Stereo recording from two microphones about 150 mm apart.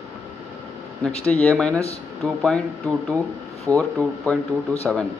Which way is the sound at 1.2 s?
5° left (ahead or behind).